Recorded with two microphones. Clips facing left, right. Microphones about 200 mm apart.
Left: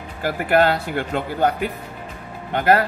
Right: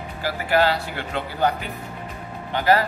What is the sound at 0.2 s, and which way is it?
A man's voice, 55° left (ahead or behind).